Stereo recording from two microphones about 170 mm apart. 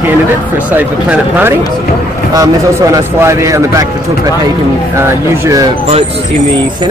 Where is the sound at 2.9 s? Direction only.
15° right (ahead or behind).